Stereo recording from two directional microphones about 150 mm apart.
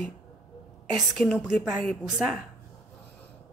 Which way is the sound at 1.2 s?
5° left (ahead or behind).